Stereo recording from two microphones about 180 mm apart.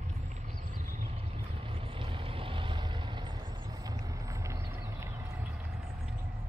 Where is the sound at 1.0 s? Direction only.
30° right (ahead or behind); by 5.2 s 15° right (ahead or behind).